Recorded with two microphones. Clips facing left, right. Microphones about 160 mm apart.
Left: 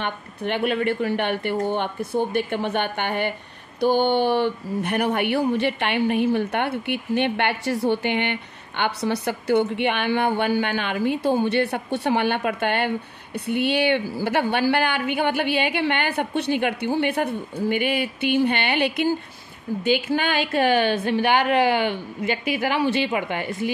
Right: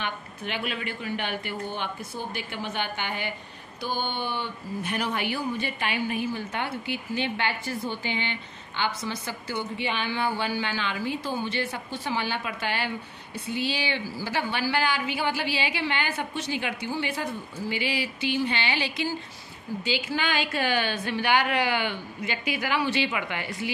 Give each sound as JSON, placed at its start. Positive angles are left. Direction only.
{"t": 0.0, "sound": "a woman's voice", "side_deg": 60}